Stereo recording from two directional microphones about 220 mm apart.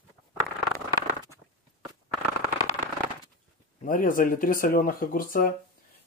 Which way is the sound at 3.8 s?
40° left (ahead or behind).